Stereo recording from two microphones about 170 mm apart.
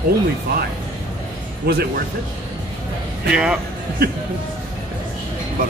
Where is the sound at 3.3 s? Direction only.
5° right (ahead or behind).